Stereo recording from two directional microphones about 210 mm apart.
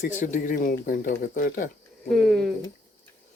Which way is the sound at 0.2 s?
40° left (ahead or behind).